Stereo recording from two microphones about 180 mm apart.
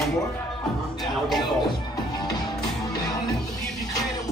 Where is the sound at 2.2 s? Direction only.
25° left (ahead or behind).